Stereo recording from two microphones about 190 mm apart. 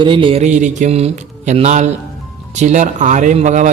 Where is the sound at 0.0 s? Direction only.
25° right (ahead or behind).